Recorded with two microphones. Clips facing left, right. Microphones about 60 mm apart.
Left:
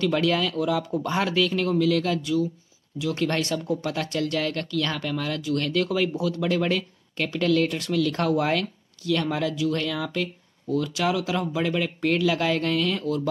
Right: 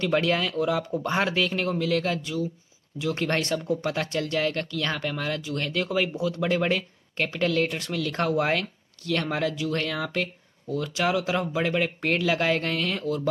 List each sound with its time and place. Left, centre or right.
0.0 s speech: right